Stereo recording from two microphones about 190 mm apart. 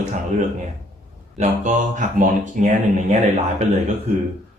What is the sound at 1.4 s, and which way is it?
Speech, 40° right (ahead or behind).